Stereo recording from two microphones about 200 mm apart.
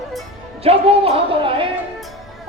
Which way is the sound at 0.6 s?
30° right (ahead or behind).